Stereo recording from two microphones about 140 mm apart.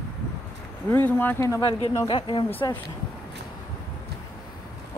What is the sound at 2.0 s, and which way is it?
Speech, 35° left (ahead or behind).